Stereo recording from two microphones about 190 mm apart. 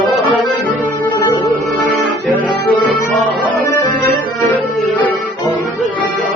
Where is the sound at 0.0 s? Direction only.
Centre (ahead or behind).